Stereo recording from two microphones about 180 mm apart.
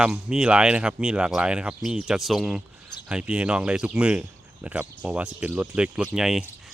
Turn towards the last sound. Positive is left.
turn(degrees=0)  # may be behind; listen again after turning